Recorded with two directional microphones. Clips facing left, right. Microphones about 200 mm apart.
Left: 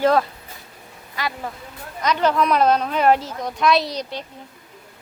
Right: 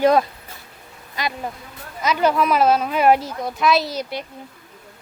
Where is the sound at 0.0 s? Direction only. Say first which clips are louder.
Right 2 dB; 15° right (ahead or behind).